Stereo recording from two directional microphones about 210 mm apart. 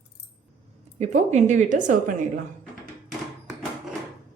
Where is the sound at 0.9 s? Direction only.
30° right (ahead or behind).